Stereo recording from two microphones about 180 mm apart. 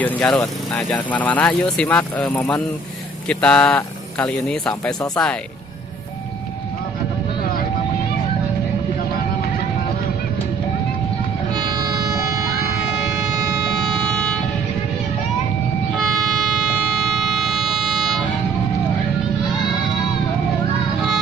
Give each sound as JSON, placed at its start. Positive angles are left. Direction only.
{"t": 0.0, "sound": "speech", "side_deg": 5}
{"t": 14.0, "sound": "vehicle", "side_deg": 5}
{"t": 15.9, "sound": "vehicle", "side_deg": 0}
{"t": 17.4, "sound": "vehicle", "side_deg": 0}